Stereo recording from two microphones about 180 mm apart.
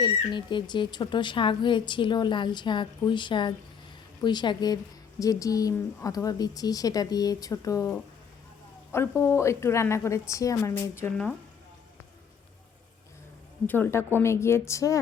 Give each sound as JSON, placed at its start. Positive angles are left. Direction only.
{"t": 0.0, "sound": "a woman's voice", "side_deg": 25}
{"t": 13.7, "sound": "a woman's voice", "side_deg": 10}